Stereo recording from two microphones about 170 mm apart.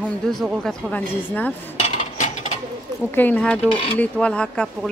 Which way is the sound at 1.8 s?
45° left (ahead or behind).